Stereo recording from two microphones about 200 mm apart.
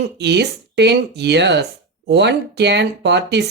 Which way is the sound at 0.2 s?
55° right (ahead or behind).